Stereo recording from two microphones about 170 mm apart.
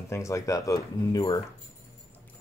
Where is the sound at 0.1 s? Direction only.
15° left (ahead or behind).